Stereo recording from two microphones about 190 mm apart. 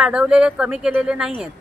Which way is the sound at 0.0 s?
5° right (ahead or behind).